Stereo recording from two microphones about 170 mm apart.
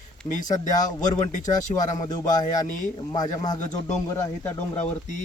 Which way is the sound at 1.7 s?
20° left (ahead or behind).